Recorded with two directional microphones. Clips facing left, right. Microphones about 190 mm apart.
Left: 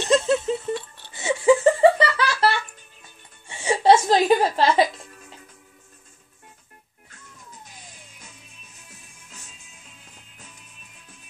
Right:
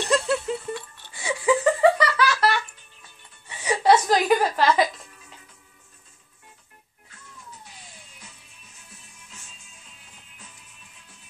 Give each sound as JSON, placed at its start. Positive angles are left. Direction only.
{"t": 0.0, "sound": "laughter", "side_deg": 20}
{"t": 3.4, "sound": "music", "side_deg": 30}